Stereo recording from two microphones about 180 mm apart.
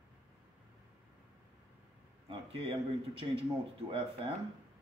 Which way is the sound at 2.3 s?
30° right (ahead or behind).